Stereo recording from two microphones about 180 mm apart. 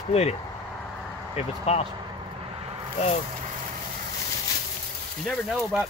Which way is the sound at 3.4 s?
45° right (ahead or behind).